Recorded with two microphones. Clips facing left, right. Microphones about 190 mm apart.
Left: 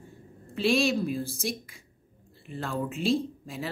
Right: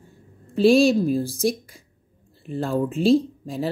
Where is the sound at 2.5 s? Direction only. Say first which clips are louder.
Right 8 dB; 35° right (ahead or behind).